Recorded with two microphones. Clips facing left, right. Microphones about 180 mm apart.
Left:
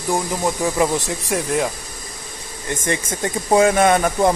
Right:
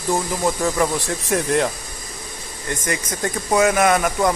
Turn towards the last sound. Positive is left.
turn(degrees=30)  # may be behind; listen again after turning